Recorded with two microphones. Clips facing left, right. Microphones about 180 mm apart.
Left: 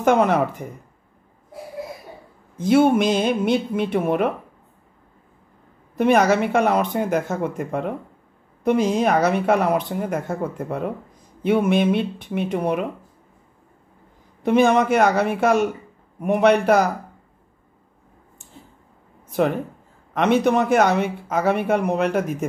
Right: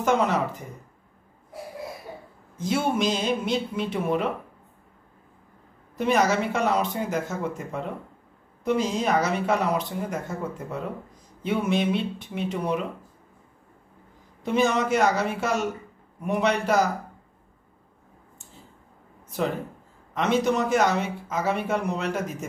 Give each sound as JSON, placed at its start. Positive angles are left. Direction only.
{"t": 0.0, "sound": "speech", "side_deg": 55}
{"t": 2.5, "sound": "speech", "side_deg": 55}
{"t": 5.9, "sound": "speech", "side_deg": 60}
{"t": 14.4, "sound": "speech", "side_deg": 60}
{"t": 20.2, "sound": "speech", "side_deg": 60}